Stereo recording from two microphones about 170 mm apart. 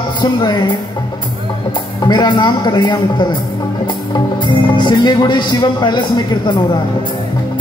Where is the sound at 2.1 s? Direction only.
25° left (ahead or behind).